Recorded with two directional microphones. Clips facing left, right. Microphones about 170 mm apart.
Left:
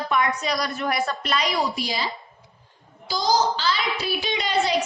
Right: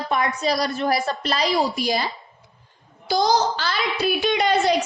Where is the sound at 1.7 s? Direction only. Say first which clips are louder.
Right 6 dB; 45° right (ahead or behind).